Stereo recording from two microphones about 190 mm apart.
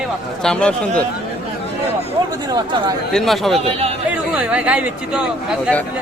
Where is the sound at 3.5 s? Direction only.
30° right (ahead or behind).